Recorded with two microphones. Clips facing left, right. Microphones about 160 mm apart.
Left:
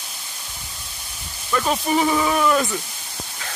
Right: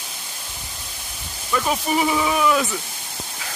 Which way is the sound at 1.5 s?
5° right (ahead or behind).